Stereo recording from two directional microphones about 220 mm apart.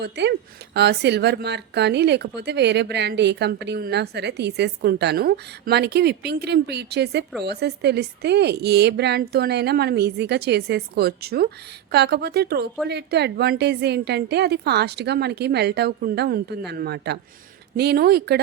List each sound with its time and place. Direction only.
0.0 s speech: 50° right (ahead or behind)